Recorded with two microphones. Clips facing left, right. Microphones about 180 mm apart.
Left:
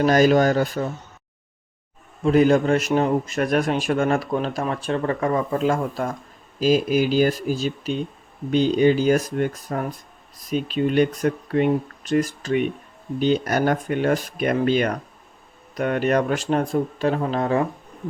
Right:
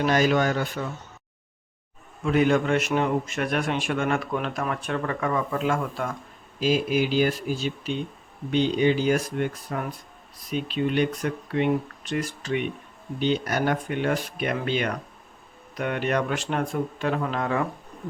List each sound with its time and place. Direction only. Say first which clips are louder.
0.0 s a man's voice: left 5 dB; 40° left (ahead or behind)
2.2 s a man's voice: left 5 dB; 35° left (ahead or behind)